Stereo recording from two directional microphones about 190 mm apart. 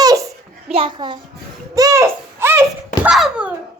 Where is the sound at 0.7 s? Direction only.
25° right (ahead or behind).